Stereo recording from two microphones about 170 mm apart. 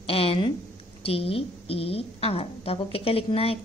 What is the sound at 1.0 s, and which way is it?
A woman's voice, 35° left (ahead or behind).